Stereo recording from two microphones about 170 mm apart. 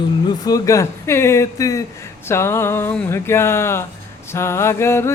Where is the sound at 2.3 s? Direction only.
15° left (ahead or behind).